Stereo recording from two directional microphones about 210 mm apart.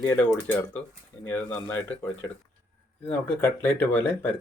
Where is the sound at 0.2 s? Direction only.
10° left (ahead or behind).